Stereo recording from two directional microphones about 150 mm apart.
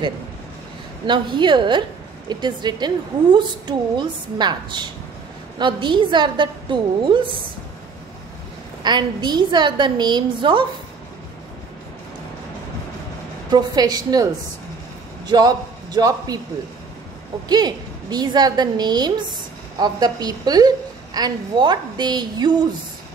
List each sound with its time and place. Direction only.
1.0 s a woman's voice: 30° right (ahead or behind)
8.8 s a woman's voice: 30° right (ahead or behind)
13.5 s a woman's voice: 25° right (ahead or behind)
17.5 s a woman's voice: 25° right (ahead or behind)